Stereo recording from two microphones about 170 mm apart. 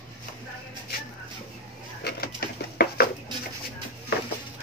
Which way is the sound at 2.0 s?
70° left (ahead or behind).